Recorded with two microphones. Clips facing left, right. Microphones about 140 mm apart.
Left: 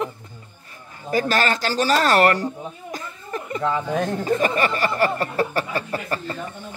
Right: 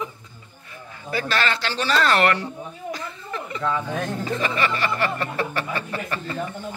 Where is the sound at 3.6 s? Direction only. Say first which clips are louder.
Left 3 dB; 25° left (ahead or behind).